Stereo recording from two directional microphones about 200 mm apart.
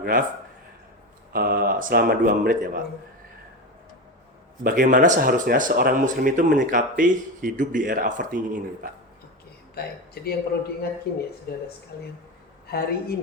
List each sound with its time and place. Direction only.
0.0 s a man's voice: 45° right (ahead or behind)
1.3 s speech: 50° right (ahead or behind)
4.6 s speech: 40° right (ahead or behind)
10.2 s a woman's voice: 50° left (ahead or behind)
12.6 s a woman's voice: 50° left (ahead or behind)